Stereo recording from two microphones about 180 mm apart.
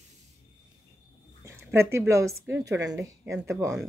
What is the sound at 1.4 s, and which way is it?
A woman's voice, 15° right (ahead or behind).